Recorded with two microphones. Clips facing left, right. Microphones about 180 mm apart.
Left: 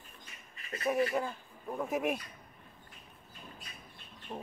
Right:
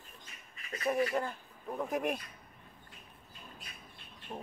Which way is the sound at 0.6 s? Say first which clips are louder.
Left 1 dB; 35° left (ahead or behind).